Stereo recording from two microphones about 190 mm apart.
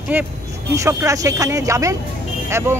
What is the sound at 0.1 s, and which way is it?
Speech, 10° right (ahead or behind).